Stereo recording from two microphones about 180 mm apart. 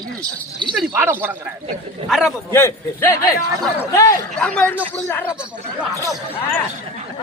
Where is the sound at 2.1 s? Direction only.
Centre (ahead or behind).